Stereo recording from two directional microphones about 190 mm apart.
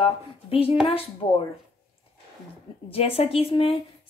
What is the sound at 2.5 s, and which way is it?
Speech, 30° left (ahead or behind).